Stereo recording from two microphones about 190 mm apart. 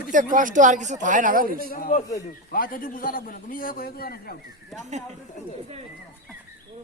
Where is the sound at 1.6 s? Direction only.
50° left (ahead or behind).